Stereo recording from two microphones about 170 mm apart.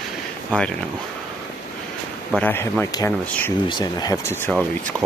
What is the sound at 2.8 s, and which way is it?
Speech, 20° left (ahead or behind).